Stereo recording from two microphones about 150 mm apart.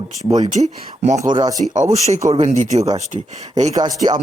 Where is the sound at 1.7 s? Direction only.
50° right (ahead or behind).